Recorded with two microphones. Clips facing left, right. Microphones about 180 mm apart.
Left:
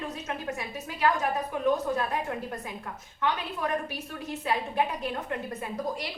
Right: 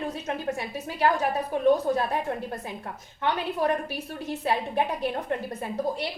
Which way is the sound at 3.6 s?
35° right (ahead or behind).